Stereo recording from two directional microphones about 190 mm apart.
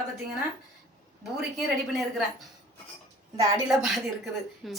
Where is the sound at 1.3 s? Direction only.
Centre (ahead or behind).